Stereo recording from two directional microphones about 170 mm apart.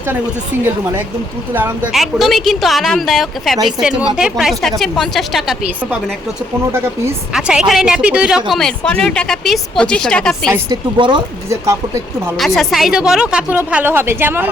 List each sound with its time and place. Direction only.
1.5 s a woman's voice: 10° right (ahead or behind)
1.9 s a woman's voice: centre (ahead or behind)
7.3 s a woman's voice: 5° right (ahead or behind)
10.5 s speech: 25° right (ahead or behind)
12.5 s a woman's voice: centre (ahead or behind)